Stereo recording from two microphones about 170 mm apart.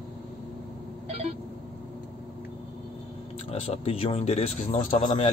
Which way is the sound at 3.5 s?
35° left (ahead or behind).